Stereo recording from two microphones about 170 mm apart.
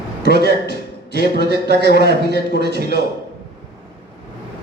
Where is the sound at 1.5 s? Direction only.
75° right (ahead or behind).